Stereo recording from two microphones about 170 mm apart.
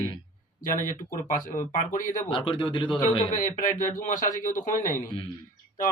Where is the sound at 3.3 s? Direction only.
50° left (ahead or behind).